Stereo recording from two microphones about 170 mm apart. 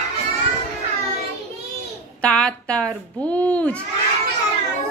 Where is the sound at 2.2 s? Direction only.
5° left (ahead or behind).